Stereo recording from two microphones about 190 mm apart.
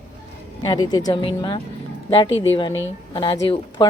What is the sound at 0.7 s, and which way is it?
A woman's voice, 20° left (ahead or behind).